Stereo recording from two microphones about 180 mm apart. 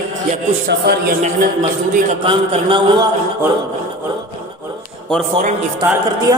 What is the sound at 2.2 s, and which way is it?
Speech, 30° right (ahead or behind).